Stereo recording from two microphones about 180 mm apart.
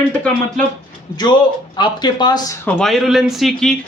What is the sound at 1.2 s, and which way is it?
Speech, 25° left (ahead or behind).